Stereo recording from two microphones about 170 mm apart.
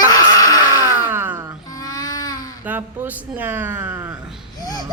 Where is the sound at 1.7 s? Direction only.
20° left (ahead or behind).